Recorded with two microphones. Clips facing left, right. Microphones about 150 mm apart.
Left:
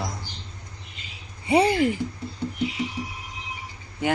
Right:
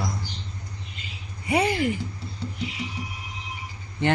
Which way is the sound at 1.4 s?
30° left (ahead or behind).